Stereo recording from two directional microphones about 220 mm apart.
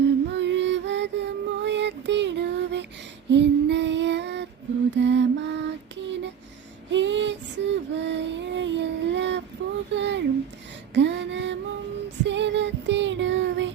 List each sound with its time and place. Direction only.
0.0 s music: 55° right (ahead or behind)
3.2 s female singing: 55° right (ahead or behind)
4.9 s lullaby: 55° right (ahead or behind)
6.9 s child singing: 55° right (ahead or behind)
9.9 s a sound: 55° right (ahead or behind)
12.2 s child singing: 55° right (ahead or behind)